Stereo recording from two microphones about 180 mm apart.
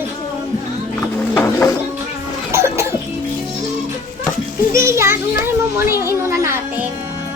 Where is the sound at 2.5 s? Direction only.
15° right (ahead or behind).